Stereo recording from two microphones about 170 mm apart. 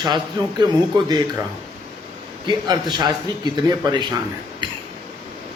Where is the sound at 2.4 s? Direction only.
25° right (ahead or behind).